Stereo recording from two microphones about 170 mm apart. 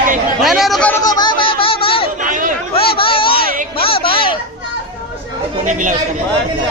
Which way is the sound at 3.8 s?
35° left (ahead or behind).